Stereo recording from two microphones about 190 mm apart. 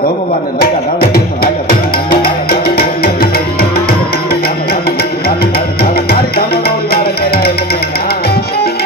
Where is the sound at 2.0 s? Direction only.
50° left (ahead or behind).